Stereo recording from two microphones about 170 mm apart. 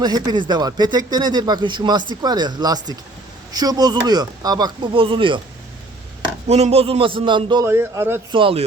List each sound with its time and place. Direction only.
0.0 s speech: 25° right (ahead or behind)
6.5 s a man's voice: 35° right (ahead or behind)
7.6 s a man's voice: 15° right (ahead or behind)
8.3 s a man's voice: 30° right (ahead or behind)